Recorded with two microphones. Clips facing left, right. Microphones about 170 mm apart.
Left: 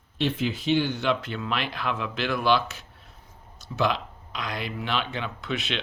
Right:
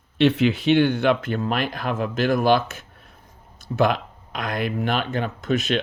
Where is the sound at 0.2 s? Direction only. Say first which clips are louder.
Right 9 dB; 70° right (ahead or behind).